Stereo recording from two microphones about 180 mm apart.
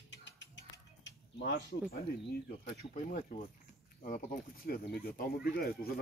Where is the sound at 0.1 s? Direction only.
90° left.